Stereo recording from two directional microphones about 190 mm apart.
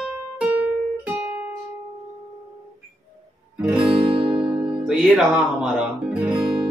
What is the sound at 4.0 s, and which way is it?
Music, 30° right (ahead or behind).